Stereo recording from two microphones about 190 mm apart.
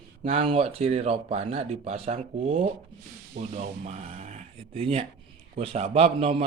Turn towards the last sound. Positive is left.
turn(degrees=-30)  # may be behind; listen again after turning